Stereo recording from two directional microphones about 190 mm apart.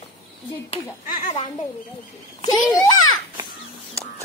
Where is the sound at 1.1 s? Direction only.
40° left (ahead or behind).